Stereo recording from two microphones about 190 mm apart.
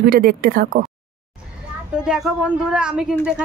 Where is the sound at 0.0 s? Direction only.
50° right (ahead or behind).